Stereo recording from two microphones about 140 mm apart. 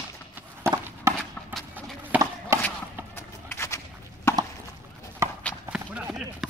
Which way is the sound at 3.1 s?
20° left (ahead or behind).